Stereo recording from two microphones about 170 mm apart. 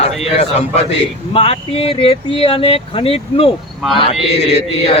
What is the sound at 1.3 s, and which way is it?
Chant, 35° left (ahead or behind).